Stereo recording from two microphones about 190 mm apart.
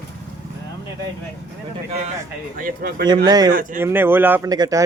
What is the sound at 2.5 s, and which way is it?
Speech, 50° right (ahead or behind).